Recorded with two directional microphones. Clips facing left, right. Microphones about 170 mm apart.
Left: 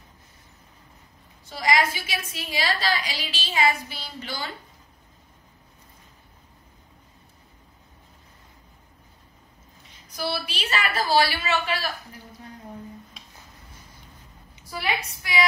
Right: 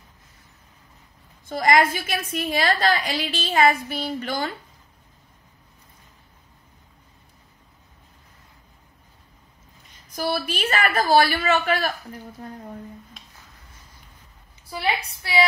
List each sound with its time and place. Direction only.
1.5 s a woman's voice: 50° right (ahead or behind)
10.1 s a woman's voice: 45° right (ahead or behind)
13.2 s music: centre (ahead or behind)
14.7 s a woman's voice: 30° right (ahead or behind)